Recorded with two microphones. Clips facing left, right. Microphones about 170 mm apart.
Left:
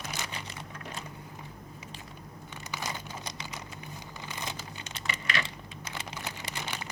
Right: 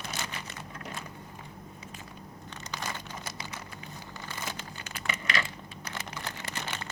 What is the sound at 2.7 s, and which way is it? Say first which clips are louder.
Crumpling: even; 15° left (ahead or behind).